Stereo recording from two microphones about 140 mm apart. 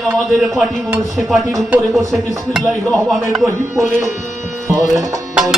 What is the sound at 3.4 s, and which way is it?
Speech, 20° right (ahead or behind).